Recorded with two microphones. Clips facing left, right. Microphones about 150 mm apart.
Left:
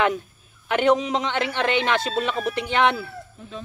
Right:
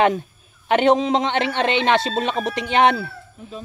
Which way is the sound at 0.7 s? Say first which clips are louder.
Right 3 dB; 25° right (ahead or behind).